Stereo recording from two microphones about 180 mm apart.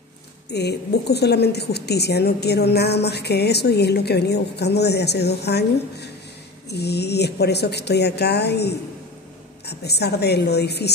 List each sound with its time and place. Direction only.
0.5 s a woman's voice: 65° left (ahead or behind)